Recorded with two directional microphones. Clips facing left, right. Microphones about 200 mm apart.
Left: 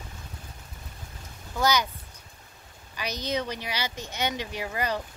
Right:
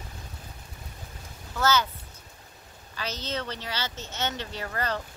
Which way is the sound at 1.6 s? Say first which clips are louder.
Even; 15° left (ahead or behind).